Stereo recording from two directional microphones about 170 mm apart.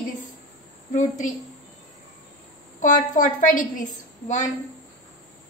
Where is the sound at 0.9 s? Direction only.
45° left (ahead or behind).